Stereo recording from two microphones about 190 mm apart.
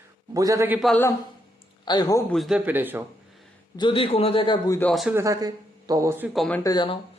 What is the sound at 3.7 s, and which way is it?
A man's voice, 25° left (ahead or behind).